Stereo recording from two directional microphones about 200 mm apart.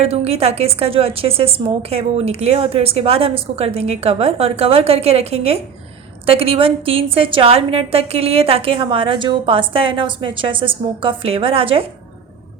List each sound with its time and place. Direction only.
0.0 s a woman's voice: 30° right (ahead or behind)